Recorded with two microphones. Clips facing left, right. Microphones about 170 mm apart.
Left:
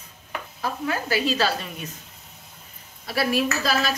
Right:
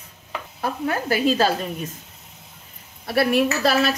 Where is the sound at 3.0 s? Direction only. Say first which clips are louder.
Right 4 dB; 60° right (ahead or behind).